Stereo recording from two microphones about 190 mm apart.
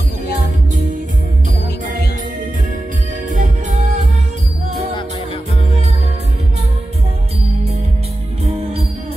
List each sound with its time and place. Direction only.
3.3 s music: 40° right (ahead or behind)